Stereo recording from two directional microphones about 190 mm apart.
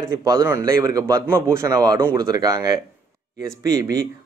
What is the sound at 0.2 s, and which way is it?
Speech, 15° right (ahead or behind).